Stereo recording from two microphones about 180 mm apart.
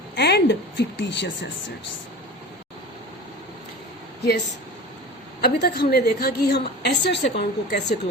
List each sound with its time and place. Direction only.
0.2 s a woman's voice: 70° left (ahead or behind); by 1.7 s 85° left
5.4 s a woman's voice: 60° left (ahead or behind)